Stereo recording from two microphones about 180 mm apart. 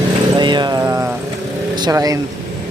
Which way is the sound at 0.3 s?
25° right (ahead or behind).